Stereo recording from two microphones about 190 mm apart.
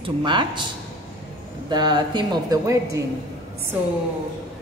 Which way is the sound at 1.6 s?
20° right (ahead or behind).